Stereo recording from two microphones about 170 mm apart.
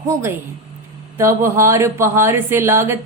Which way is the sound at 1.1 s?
15° right (ahead or behind).